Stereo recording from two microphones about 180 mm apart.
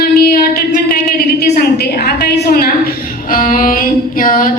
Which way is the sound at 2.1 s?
60° left (ahead or behind).